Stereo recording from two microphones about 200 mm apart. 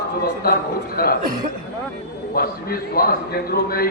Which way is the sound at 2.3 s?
50° left (ahead or behind).